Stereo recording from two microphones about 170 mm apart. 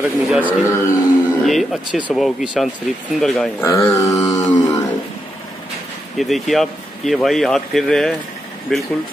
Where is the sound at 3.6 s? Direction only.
15° left (ahead or behind).